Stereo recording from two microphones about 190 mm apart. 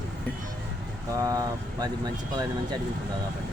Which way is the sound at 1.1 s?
20° right (ahead or behind).